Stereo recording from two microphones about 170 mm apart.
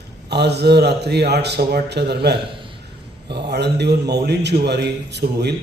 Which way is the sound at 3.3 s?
80° right.